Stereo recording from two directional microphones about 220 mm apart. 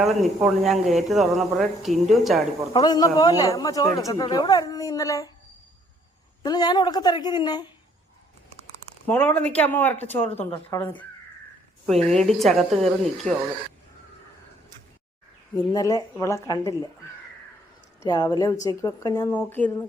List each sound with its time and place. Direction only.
0.0 s a woman's voice: centre (ahead or behind)
2.7 s speech: 20° left (ahead or behind)
6.4 s a woman's voice: 20° left (ahead or behind)
9.0 s speech: 10° left (ahead or behind)
10.2 s a woman's voice: 25° left (ahead or behind)
10.7 s speech: 10° left (ahead or behind)
11.9 s a woman's voice: 30° right (ahead or behind)
12.2 s a woman's voice: centre (ahead or behind)
15.5 s speech: 15° left (ahead or behind)
18.0 s speech: 15° left (ahead or behind)